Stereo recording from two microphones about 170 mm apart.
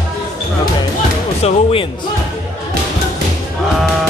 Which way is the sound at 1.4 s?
35° left (ahead or behind).